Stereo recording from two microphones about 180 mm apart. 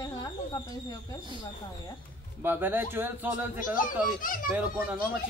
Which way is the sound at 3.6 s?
50° left (ahead or behind).